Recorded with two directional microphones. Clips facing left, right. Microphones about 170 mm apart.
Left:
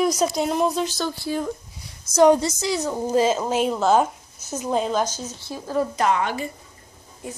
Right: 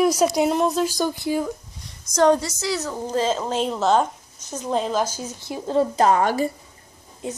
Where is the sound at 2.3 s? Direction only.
20° left (ahead or behind); by 6.5 s 40° right (ahead or behind).